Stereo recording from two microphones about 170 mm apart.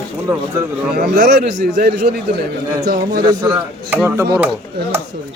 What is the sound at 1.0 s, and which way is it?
Speech, 65° right (ahead or behind).